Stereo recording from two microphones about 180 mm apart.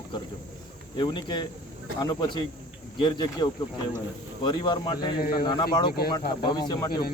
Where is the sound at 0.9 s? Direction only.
25° left (ahead or behind).